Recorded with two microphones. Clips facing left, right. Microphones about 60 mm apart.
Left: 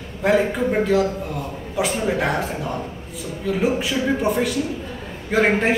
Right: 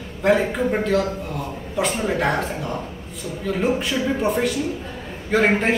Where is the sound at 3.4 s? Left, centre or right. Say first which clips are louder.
Left 1 dB; centre.